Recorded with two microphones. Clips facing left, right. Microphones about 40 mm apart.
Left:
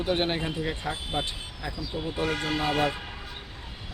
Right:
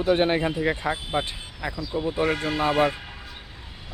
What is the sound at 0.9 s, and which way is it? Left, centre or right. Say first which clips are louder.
Speech: right 6 dB; right.